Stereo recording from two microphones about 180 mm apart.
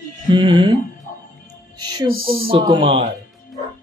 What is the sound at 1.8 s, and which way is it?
Speech, 20° right (ahead or behind).